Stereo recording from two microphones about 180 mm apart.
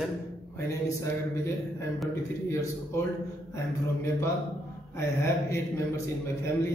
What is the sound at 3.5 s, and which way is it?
Speech, 15° left (ahead or behind).